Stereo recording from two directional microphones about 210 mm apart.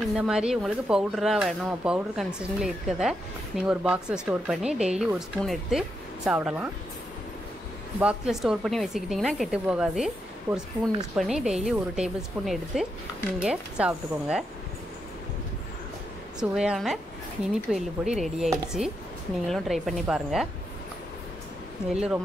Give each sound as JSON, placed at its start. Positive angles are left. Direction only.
{"t": 0.1, "sound": "speech", "side_deg": -5}
{"t": 8.0, "sound": "speech", "side_deg": -5}
{"t": 16.3, "sound": "speech", "side_deg": -5}
{"t": 21.9, "sound": "speech", "side_deg": -5}